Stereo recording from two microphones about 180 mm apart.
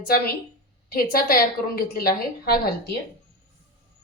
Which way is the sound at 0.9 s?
55° left (ahead or behind).